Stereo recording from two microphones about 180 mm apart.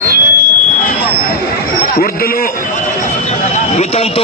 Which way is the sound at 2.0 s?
55° left (ahead or behind).